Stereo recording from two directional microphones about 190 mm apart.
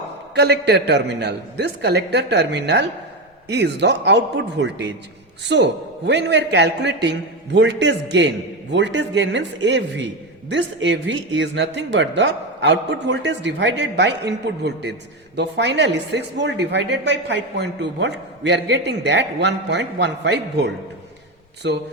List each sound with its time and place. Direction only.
0.3 s speech: 60° right (ahead or behind)